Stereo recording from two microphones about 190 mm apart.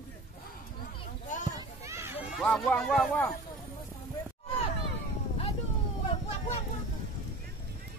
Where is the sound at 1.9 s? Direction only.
15° right (ahead or behind).